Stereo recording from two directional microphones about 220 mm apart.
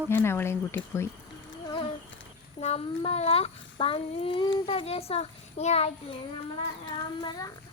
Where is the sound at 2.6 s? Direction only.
30° left (ahead or behind).